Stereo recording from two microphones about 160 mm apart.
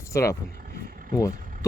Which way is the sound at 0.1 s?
20° left (ahead or behind).